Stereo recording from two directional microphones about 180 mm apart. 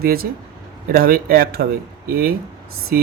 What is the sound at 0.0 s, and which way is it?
Speech, 55° right (ahead or behind).